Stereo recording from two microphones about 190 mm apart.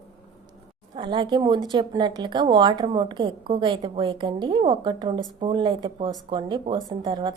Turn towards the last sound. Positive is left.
turn(degrees=-25)  # may be behind; listen again after turning